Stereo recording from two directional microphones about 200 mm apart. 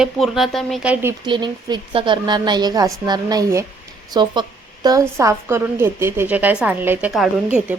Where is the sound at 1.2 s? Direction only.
20° right (ahead or behind); by 7.3 s 5° right (ahead or behind).